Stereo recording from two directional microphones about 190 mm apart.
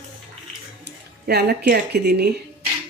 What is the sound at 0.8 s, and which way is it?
Speech, 60° right (ahead or behind).